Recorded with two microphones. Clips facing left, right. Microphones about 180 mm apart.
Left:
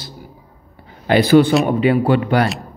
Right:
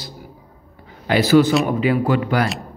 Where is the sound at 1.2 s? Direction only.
55° left (ahead or behind).